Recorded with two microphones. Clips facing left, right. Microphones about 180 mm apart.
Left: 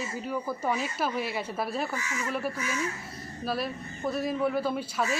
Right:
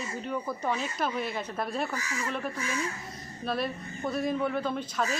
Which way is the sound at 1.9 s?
35° right (ahead or behind).